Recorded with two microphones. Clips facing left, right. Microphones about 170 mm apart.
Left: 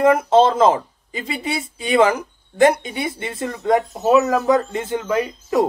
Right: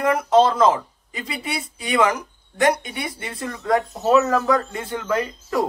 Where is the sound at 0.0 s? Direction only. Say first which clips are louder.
Left 3 dB; 25° left (ahead or behind).